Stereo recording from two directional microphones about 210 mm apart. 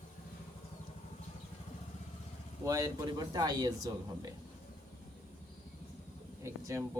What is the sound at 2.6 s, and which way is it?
Speech, 15° right (ahead or behind).